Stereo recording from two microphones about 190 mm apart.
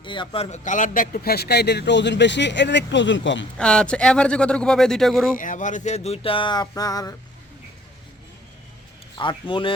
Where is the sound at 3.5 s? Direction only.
5° left (ahead or behind).